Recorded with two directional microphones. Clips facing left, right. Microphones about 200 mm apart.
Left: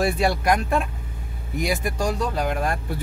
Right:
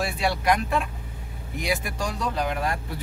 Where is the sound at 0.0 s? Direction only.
45° left (ahead or behind).